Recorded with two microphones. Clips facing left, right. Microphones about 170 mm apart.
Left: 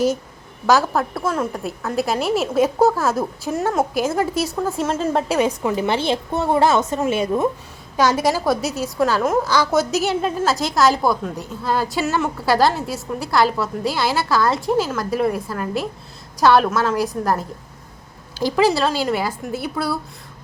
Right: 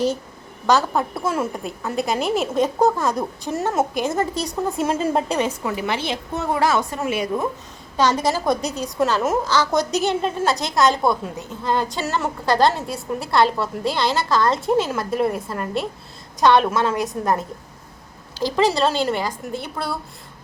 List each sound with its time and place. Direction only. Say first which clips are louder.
0.7 s a woman's voice: left 2 dB; 5° left (ahead or behind)
1.3 s a woman's voice: left 1 dB; 10° right (ahead or behind)
5.4 s a woman's voice: left 4 dB; 15° left (ahead or behind)
5.7 s a woman's voice: left 5 dB; 30° left (ahead or behind)
7.9 s a woman's voice: left 2 dB; 10° left (ahead or behind)
18.3 s a woman's voice: left 2 dB; 10° left (ahead or behind)